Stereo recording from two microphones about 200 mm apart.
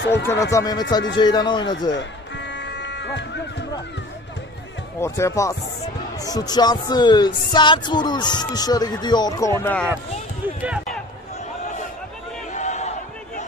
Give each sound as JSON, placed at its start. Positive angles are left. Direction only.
{"t": 0.2, "sound": "speech", "side_deg": 15}
{"t": 1.1, "sound": "music", "side_deg": 20}
{"t": 1.9, "sound": "music", "side_deg": 60}
{"t": 5.0, "sound": "speech", "side_deg": 15}
{"t": 6.1, "sound": "music", "side_deg": 20}
{"t": 10.4, "sound": "speech", "side_deg": -10}
{"t": 12.5, "sound": "a sound", "side_deg": 35}